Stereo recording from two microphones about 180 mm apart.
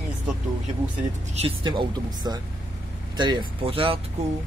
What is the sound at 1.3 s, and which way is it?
Speech, 30° right (ahead or behind).